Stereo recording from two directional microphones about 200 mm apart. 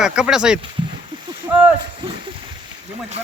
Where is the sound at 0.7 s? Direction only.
25° right (ahead or behind).